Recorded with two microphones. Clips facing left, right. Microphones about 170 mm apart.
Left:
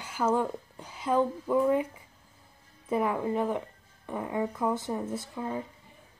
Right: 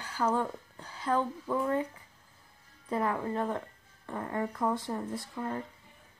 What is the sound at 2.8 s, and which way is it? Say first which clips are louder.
A woman's voice: left 3 dB; 10° left (ahead or behind).